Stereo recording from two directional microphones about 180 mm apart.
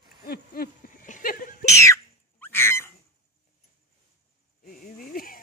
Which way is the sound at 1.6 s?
15° left (ahead or behind).